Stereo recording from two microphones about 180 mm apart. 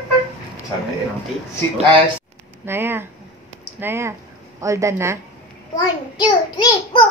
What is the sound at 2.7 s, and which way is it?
A woman's voice, 10° right (ahead or behind).